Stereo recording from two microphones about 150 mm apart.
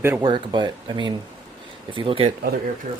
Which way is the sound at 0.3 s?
30° right (ahead or behind).